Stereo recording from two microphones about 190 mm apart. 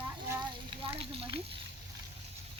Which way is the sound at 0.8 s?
30° right (ahead or behind).